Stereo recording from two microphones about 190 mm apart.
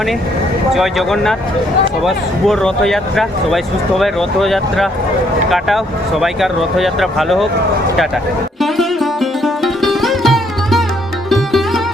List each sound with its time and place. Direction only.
0.7 s speech: centre (ahead or behind)
8.6 s sitar: centre (ahead or behind)